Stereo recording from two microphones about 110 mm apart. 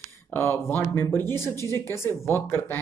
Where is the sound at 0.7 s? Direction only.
20° left (ahead or behind).